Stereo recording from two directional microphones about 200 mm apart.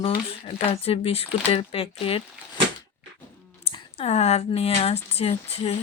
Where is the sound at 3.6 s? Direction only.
30° left (ahead or behind).